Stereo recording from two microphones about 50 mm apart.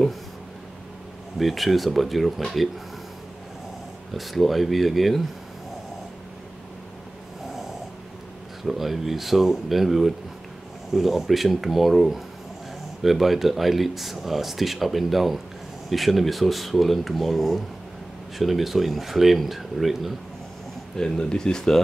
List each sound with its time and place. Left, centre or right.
1.4 s speech: centre
4.1 s speech: centre
8.6 s speech: centre
20.9 s speech: centre